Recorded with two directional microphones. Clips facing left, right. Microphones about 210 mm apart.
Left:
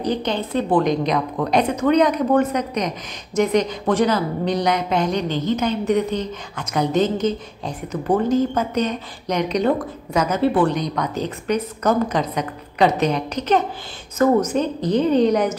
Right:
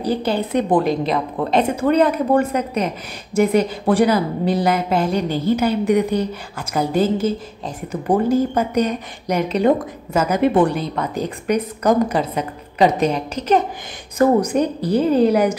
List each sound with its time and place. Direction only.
0.0 s a woman's voice: 5° right (ahead or behind)
0.8 s a woman's voice: 5° right (ahead or behind)